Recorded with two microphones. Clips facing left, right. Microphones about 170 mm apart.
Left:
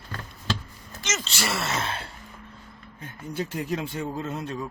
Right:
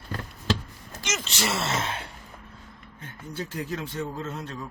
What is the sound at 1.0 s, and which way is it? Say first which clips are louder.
Speech: even; 15° right (ahead or behind).